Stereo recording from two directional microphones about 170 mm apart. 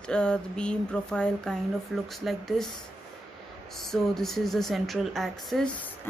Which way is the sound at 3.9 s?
Centre (ahead or behind).